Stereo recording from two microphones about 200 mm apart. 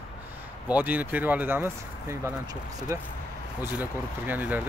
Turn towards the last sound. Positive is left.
turn(degrees=-10)  # may be behind; listen again after turning